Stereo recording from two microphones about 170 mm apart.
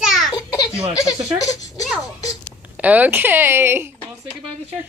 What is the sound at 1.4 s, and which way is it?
Speech, 20° left (ahead or behind).